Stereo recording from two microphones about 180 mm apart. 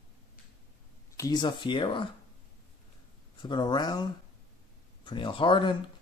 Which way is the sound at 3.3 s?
25° left (ahead or behind).